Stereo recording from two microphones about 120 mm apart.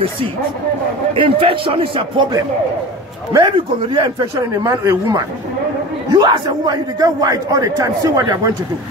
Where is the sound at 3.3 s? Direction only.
40° right (ahead or behind).